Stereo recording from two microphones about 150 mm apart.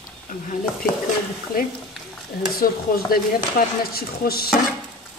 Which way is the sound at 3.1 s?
85° left.